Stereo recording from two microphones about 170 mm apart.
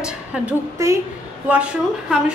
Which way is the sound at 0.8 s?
15° right (ahead or behind).